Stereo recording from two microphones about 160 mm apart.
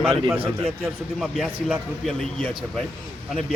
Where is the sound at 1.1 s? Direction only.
Centre (ahead or behind).